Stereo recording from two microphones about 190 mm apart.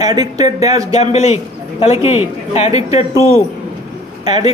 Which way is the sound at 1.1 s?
35° left (ahead or behind).